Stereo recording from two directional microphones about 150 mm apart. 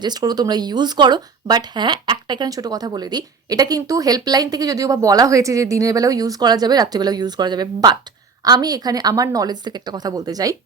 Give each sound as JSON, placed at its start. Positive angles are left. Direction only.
{"t": 0.0, "sound": "speech", "side_deg": -25}